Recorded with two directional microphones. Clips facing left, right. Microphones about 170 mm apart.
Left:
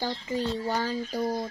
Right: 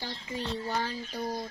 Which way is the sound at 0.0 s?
40° left (ahead or behind).